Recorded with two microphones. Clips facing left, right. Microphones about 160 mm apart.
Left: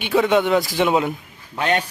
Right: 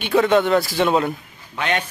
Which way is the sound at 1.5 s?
35° left (ahead or behind).